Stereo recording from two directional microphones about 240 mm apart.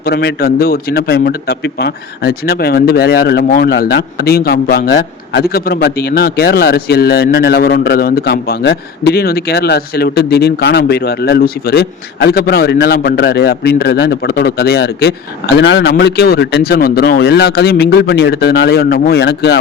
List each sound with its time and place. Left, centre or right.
0.0 s a man's voice: left